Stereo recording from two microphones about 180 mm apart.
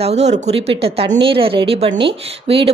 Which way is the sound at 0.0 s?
40° right (ahead or behind).